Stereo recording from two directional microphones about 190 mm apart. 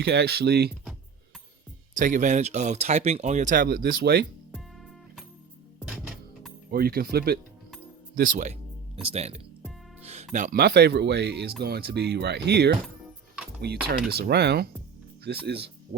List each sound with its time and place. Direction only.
0.0 s speech: 60° right (ahead or behind)
2.0 s speech: 40° right (ahead or behind); by 4.3 s 55° right (ahead or behind)
6.7 s speech: 50° right (ahead or behind)
9.0 s speech: 35° right (ahead or behind)
10.0 s music: 35° right (ahead or behind)
10.3 s speech: 45° right (ahead or behind)